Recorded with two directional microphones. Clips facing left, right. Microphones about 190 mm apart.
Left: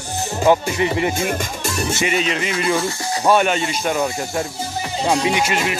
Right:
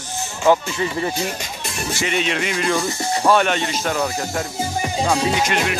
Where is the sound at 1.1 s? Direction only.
50° left (ahead or behind).